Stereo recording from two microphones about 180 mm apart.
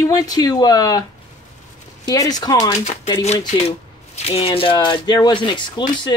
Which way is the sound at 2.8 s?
35° left (ahead or behind).